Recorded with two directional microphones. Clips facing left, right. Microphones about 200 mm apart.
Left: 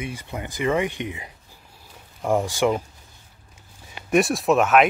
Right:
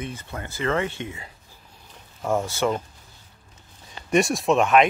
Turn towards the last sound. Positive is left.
turn(degrees=5)  # may be behind; listen again after turning